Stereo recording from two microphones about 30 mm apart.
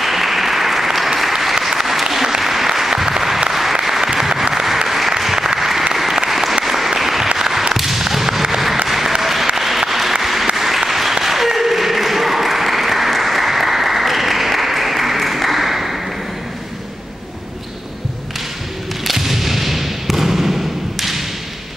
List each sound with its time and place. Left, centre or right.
0.0 s applause: centre
4.8 s applause: centre
7.3 s fireworks: centre
8.8 s applause: centre
19.0 s a sound: centre